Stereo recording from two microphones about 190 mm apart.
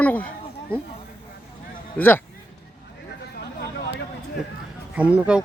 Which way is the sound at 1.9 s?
10° left (ahead or behind).